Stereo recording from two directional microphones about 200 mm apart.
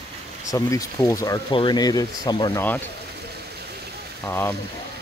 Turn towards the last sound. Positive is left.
turn(degrees=10)  # may be behind; listen again after turning